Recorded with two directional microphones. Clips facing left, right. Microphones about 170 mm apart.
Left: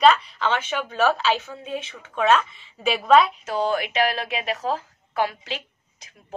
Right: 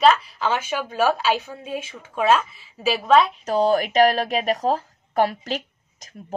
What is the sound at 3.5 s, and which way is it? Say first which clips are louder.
A woman's voice: right 5 dB; 35° right (ahead or behind).